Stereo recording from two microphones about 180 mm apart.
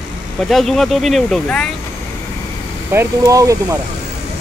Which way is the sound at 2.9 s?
15° right (ahead or behind).